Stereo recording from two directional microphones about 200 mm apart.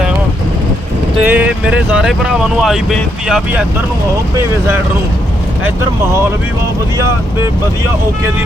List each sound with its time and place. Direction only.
1.2 s speech: 10° right (ahead or behind)